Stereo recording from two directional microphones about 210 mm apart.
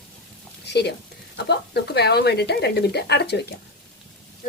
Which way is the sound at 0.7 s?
50° left (ahead or behind).